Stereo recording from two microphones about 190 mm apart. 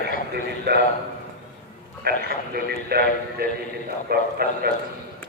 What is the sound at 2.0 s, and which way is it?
A man's voice, 55° right (ahead or behind).